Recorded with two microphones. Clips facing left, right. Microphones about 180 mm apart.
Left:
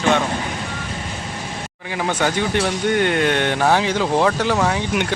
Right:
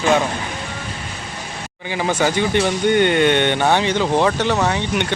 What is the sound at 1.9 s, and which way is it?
Speech, centre (ahead or behind).